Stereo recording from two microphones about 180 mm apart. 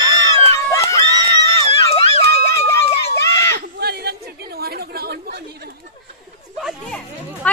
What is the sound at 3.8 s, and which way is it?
Chatter, 60° right (ahead or behind).